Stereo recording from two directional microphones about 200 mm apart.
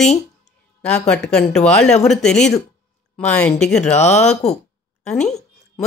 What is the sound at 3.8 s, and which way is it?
Speech, 35° left (ahead or behind).